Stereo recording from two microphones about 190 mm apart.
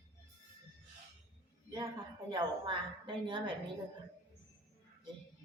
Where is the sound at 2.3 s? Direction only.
25° right (ahead or behind).